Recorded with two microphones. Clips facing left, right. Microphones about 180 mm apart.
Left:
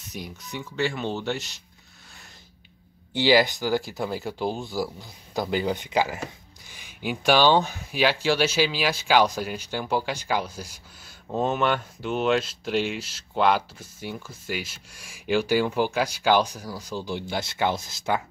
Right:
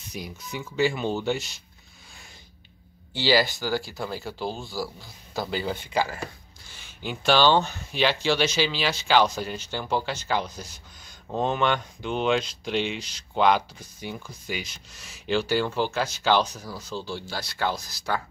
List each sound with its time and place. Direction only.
0.1 s speech: centre (ahead or behind)
3.1 s speech: 15° left (ahead or behind)